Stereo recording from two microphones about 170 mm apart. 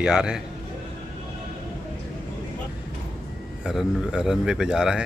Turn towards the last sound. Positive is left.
turn(degrees=-5)  # may be behind; listen again after turning